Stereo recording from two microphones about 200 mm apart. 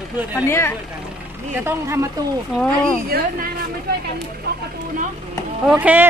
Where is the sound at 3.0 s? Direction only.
50° right (ahead or behind).